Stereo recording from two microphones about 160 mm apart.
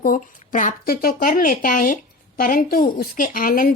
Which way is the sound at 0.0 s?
55° left (ahead or behind).